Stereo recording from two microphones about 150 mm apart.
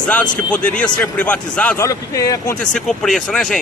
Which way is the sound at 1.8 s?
20° left (ahead or behind).